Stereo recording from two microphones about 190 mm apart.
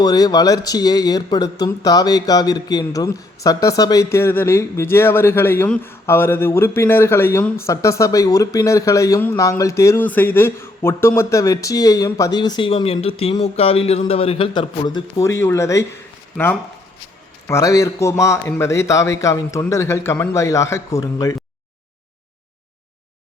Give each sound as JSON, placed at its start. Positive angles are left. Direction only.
{"t": 0.0, "sound": "speech", "side_deg": 20}
{"t": 16.4, "sound": "speech", "side_deg": 0}
{"t": 17.4, "sound": "speech", "side_deg": 15}